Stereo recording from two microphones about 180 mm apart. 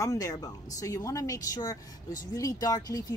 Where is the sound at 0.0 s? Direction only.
20° left (ahead or behind).